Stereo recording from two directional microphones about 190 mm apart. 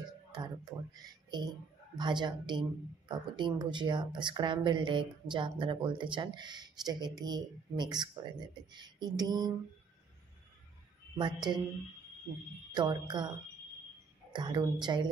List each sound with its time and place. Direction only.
0.4 s speech: 20° right (ahead or behind)
11.1 s speech: 25° right (ahead or behind)
12.7 s speech: 25° right (ahead or behind)
14.3 s speech: 25° right (ahead or behind)